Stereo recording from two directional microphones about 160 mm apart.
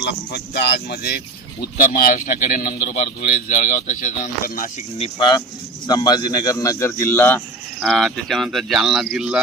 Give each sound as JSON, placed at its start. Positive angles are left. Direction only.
{"t": 0.0, "sound": "speech", "side_deg": 90}
{"t": 1.9, "sound": "speech", "side_deg": 65}
{"t": 4.9, "sound": "speech", "side_deg": 30}
{"t": 7.8, "sound": "speech", "side_deg": 0}